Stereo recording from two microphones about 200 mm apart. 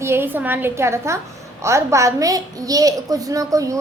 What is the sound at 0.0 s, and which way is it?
A woman's voice, 10° right (ahead or behind).